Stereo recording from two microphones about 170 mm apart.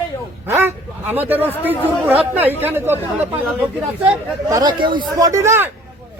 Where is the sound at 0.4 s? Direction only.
15° right (ahead or behind).